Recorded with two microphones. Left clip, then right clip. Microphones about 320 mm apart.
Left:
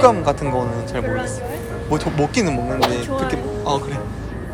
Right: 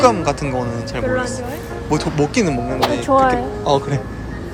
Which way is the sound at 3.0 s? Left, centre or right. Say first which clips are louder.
Right 9 dB; right.